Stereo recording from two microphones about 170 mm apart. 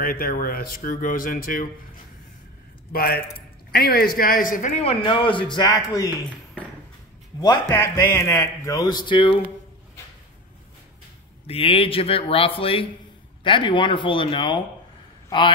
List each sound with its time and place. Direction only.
0.0 s speech: 55° left (ahead or behind)
2.9 s a man's voice: 60° left (ahead or behind); by 6.0 s 25° left (ahead or behind)
7.7 s speech: 15° left (ahead or behind); by 9.4 s 30° left (ahead or behind)
11.4 s a man's voice: 35° left (ahead or behind)